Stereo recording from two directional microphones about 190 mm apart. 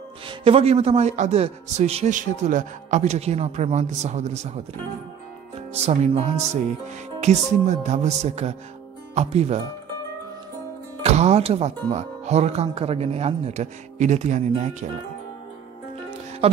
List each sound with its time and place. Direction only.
0.3 s a man's voice: 30° right (ahead or behind)
5.7 s a man's voice: 35° right (ahead or behind)
11.0 s a man's voice: 35° right (ahead or behind)
16.1 s music: 35° right (ahead or behind)